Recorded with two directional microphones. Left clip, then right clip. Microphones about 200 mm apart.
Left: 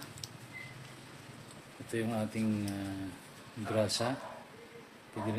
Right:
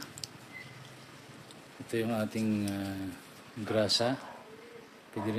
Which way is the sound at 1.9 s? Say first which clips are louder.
Right 3 dB; 35° right (ahead or behind).